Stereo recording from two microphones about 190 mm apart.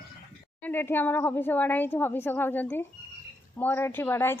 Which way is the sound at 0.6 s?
10° left (ahead or behind).